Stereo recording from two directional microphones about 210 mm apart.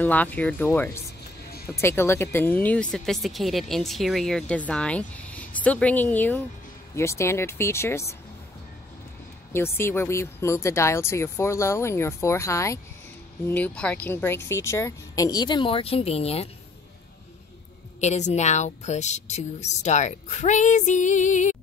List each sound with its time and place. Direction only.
0.0 s speech: 10° left (ahead or behind)
9.5 s a woman's voice: 10° left (ahead or behind); by 16.4 s 30° left (ahead or behind)
18.0 s a woman's voice: 35° left (ahead or behind)